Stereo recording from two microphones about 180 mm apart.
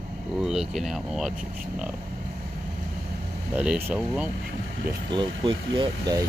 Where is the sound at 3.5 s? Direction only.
5° right (ahead or behind).